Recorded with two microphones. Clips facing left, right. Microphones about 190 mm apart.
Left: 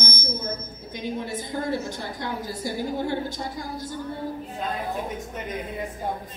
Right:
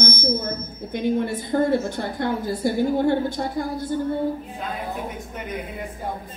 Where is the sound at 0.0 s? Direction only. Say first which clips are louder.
Right 8 dB; 60° right (ahead or behind).